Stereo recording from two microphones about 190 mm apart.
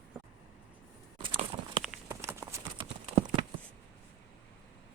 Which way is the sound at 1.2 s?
25° right (ahead or behind).